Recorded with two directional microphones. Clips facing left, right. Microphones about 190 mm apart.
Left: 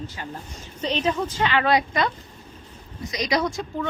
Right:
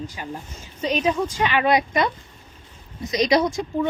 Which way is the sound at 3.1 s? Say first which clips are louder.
Right 5 dB; 25° right (ahead or behind).